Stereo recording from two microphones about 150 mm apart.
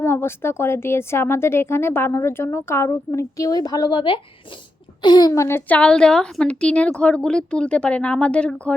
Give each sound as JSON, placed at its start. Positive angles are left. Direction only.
{"t": 0.0, "sound": "speech", "side_deg": 15}